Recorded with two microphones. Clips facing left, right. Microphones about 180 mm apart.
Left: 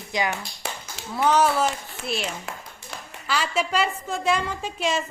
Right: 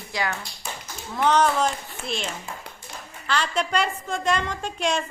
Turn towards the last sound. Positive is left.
turn(degrees=5)  # may be behind; listen again after turning